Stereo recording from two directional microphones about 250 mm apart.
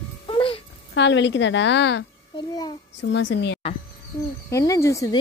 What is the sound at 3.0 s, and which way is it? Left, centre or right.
Speech, left.